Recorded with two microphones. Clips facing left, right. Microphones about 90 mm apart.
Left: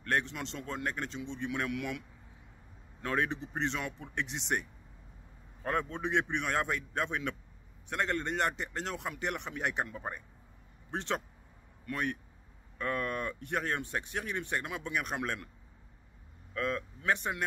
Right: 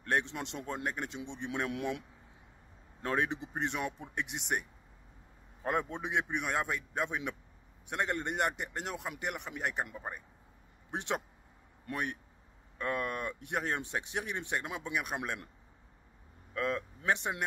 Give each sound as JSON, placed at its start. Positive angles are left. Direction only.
{"t": 0.0, "sound": "a man's voice", "side_deg": -20}
{"t": 5.6, "sound": "a man's voice", "side_deg": -20}
{"t": 6.3, "sound": "speech", "side_deg": -5}
{"t": 10.9, "sound": "a man's voice", "side_deg": -15}
{"t": 16.5, "sound": "a man's voice", "side_deg": -20}